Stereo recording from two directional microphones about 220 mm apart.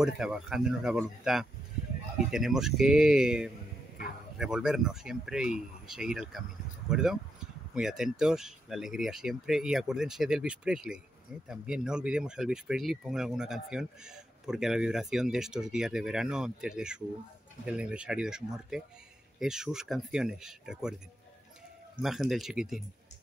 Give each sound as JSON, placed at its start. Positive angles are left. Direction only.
{"t": 0.0, "sound": "speech", "side_deg": -5}
{"t": 22.0, "sound": "speech", "side_deg": 0}